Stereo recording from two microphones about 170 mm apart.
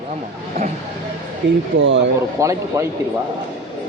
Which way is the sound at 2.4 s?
20° right (ahead or behind).